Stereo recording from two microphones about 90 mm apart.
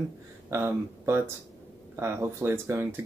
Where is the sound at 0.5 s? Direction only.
25° right (ahead or behind).